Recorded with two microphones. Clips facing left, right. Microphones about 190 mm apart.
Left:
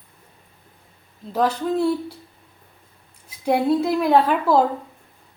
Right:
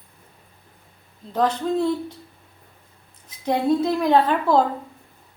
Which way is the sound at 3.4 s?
10° left (ahead or behind).